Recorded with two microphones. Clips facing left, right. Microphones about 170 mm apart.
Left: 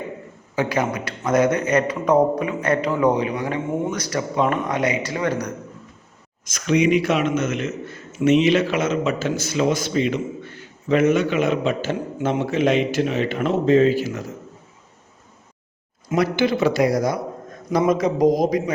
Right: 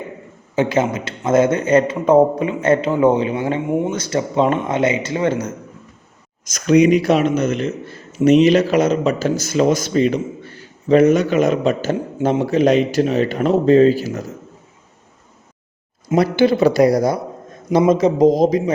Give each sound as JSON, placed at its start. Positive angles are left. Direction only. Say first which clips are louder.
{"t": 0.5, "sound": "a man's voice", "louder": "right 5 dB", "side_deg": -25}
{"t": 6.4, "sound": "a man's voice", "louder": "right 6 dB", "side_deg": -40}
{"t": 16.0, "sound": "a man's voice", "louder": "right 5 dB", "side_deg": -35}